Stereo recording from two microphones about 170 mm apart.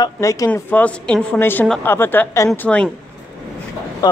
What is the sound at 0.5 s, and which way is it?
A woman's voice, 10° left (ahead or behind).